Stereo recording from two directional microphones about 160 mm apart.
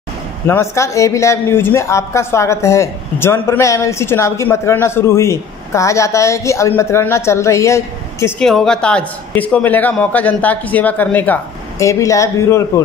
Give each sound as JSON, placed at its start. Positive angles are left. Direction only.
{"t": 0.5, "sound": "speech", "side_deg": 20}
{"t": 8.4, "sound": "speech", "side_deg": 5}